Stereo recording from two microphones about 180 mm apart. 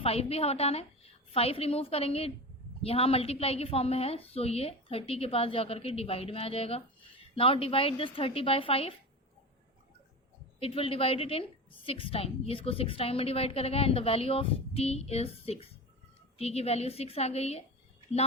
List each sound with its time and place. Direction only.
0.0 s a woman's voice: 35° left (ahead or behind)
10.6 s a woman's voice: 30° left (ahead or behind)